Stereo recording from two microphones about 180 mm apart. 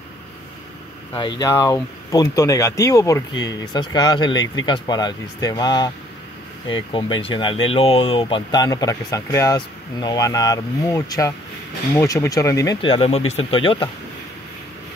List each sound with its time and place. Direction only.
1.4 s speech: 20° left (ahead or behind)
12.8 s speech: 30° left (ahead or behind)